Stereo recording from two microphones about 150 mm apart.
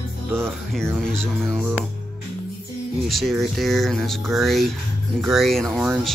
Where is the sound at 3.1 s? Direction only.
Centre (ahead or behind).